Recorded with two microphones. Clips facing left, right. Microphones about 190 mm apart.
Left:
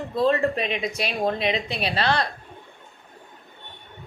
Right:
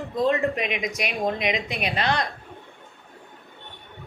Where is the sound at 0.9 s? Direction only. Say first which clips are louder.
Left 1 dB; 30° left (ahead or behind).